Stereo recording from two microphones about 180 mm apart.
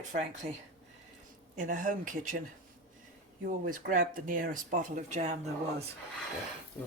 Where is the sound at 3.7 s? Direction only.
50° right (ahead or behind).